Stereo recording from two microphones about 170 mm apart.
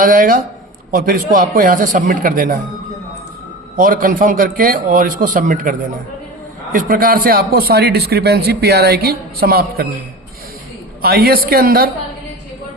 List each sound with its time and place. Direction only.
0.0 s a man's voice: 55° right (ahead or behind)
3.8 s a man's voice: 55° right (ahead or behind)
6.7 s a man's voice: 55° right (ahead or behind)
11.0 s a man's voice: 65° right (ahead or behind)